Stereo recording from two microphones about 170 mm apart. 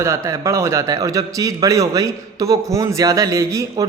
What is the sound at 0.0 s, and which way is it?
A man's voice, 15° right (ahead or behind).